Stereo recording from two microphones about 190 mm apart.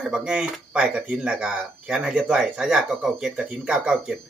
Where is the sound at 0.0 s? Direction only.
5° right (ahead or behind).